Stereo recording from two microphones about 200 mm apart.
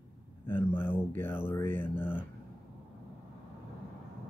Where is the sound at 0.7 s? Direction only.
10° left (ahead or behind).